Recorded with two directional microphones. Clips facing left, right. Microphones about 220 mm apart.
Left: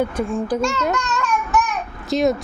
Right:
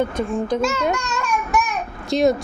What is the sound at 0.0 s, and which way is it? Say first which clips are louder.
Speech: even; 5° left (ahead or behind).